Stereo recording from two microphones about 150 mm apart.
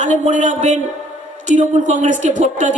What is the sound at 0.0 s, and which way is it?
A man's voice, 55° right (ahead or behind).